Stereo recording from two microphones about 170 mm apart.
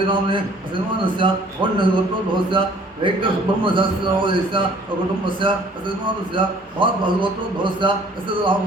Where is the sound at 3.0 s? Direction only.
30° right (ahead or behind).